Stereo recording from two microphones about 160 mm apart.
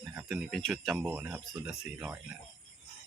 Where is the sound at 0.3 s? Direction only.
Centre (ahead or behind).